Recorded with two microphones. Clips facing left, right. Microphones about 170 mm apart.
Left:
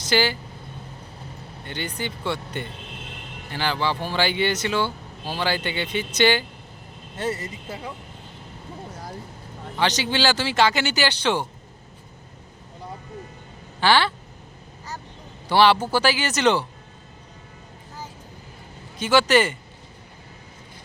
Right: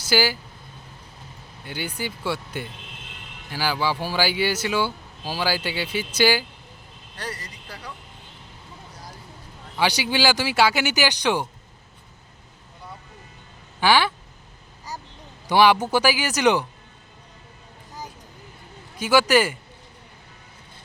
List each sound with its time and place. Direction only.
0.0 s speech: 5° right (ahead or behind)
1.6 s speech: 10° right (ahead or behind)
7.2 s speech: 25° left (ahead or behind)
9.7 s speech: 10° right (ahead or behind)
13.8 s speech: 10° right (ahead or behind)
15.4 s speech: 15° right (ahead or behind)
18.9 s speech: 10° right (ahead or behind)